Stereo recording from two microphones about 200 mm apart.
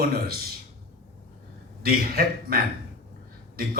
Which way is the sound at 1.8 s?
50° right (ahead or behind).